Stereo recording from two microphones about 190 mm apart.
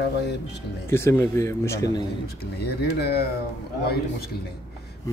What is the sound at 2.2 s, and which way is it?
Speech, 55° left (ahead or behind).